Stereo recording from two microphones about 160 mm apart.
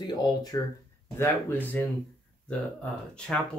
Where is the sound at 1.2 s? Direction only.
10° left (ahead or behind).